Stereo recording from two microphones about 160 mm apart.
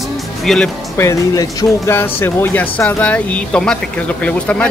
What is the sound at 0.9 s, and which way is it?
Speech, 20° left (ahead or behind).